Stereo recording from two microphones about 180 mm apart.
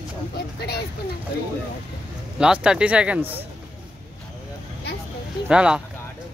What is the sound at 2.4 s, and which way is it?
Speech, 5° right (ahead or behind).